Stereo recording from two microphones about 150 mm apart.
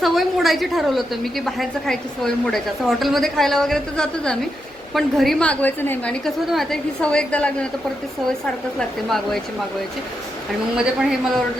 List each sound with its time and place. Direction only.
0.0 s a woman's voice: centre (ahead or behind)
9.0 s a woman's voice: centre (ahead or behind)
10.8 s a woman's voice: 5° right (ahead or behind)